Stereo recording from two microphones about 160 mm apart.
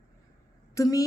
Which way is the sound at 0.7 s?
20° left (ahead or behind).